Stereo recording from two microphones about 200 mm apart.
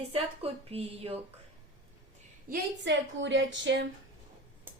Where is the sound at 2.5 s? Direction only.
60° right (ahead or behind).